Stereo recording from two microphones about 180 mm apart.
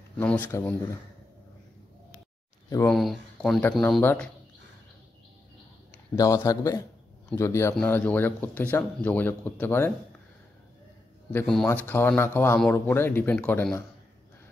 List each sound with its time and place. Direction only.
0.2 s speech: 10° left (ahead or behind)
2.9 s speech: centre (ahead or behind)
6.1 s speech: 20° left (ahead or behind)
11.3 s speech: centre (ahead or behind)